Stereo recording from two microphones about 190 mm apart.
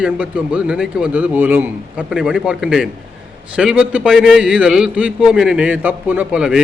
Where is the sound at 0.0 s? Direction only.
5° right (ahead or behind).